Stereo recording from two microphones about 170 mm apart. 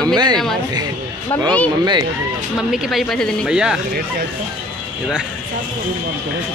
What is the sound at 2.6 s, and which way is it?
A woman's voice, centre (ahead or behind).